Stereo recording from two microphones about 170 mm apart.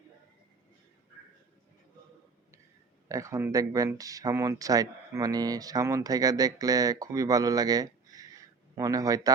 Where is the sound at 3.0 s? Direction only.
20° right (ahead or behind).